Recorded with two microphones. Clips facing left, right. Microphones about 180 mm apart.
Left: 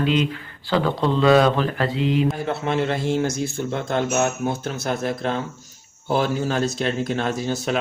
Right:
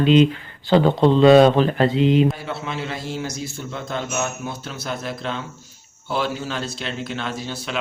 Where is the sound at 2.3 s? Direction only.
50° left (ahead or behind).